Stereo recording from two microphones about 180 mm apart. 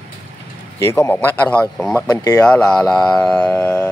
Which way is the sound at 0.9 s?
10° left (ahead or behind).